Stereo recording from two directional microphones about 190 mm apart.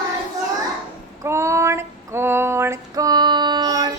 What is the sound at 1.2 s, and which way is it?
Female singing, 15° right (ahead or behind).